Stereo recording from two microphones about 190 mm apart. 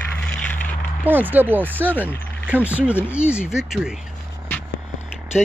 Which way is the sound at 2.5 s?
5° right (ahead or behind).